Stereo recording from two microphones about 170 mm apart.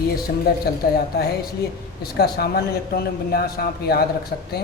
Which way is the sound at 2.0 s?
70° left (ahead or behind).